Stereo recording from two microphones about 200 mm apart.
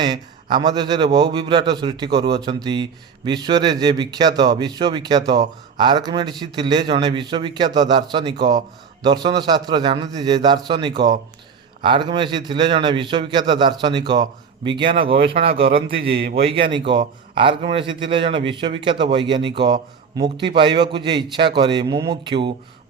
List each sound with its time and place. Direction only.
0.0 s a man's voice: 20° right (ahead or behind)
15.6 s a man's voice: 50° right (ahead or behind)
16.5 s a man's voice: 25° right (ahead or behind)